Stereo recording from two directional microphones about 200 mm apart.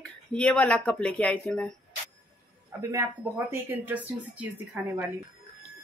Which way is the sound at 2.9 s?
10° right (ahead or behind).